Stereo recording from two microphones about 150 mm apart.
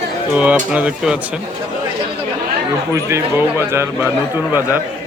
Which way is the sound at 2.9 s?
20° right (ahead or behind).